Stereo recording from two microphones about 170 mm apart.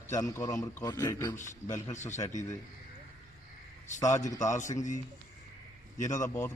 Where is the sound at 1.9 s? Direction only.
45° left (ahead or behind).